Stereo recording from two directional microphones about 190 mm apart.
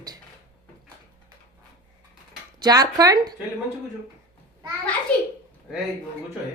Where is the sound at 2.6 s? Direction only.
20° right (ahead or behind).